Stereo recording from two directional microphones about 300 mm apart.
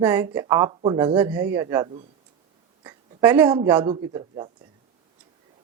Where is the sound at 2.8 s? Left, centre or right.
Centre.